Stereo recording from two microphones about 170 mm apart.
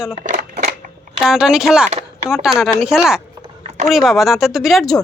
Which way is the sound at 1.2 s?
5° right (ahead or behind).